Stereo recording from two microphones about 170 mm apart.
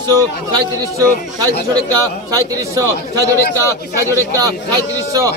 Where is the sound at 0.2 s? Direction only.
20° right (ahead or behind).